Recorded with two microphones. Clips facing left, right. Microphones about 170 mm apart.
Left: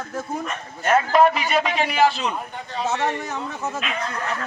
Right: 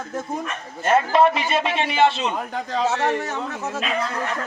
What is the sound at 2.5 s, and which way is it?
Speech, 90° right.